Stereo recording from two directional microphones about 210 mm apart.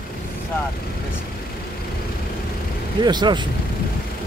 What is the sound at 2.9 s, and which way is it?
Speech, 20° right (ahead or behind).